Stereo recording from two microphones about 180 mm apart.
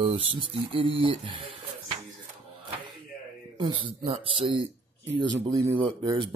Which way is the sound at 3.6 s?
25° right (ahead or behind).